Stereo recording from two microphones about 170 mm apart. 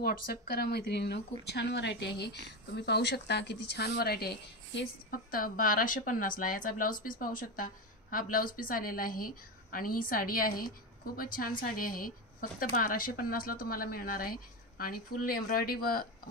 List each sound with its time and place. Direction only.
0.0 s speech: 60° left (ahead or behind)
1.5 s a woman's voice: 90° left; by 16.1 s 60° left (ahead or behind)